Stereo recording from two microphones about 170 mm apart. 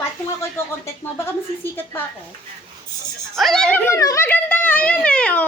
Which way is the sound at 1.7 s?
10° left (ahead or behind).